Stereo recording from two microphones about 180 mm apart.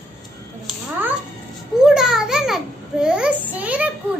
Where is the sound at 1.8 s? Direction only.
5° right (ahead or behind).